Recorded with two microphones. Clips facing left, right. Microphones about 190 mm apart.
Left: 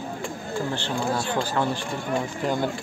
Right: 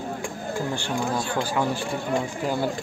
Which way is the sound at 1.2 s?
10° right (ahead or behind).